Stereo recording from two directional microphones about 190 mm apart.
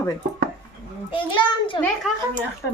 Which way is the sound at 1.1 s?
25° left (ahead or behind).